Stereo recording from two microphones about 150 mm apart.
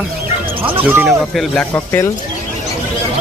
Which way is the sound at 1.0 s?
Centre (ahead or behind).